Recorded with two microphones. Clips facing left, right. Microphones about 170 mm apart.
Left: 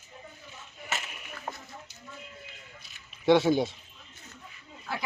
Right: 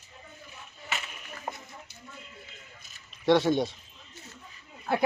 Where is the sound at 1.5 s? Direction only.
15° right (ahead or behind).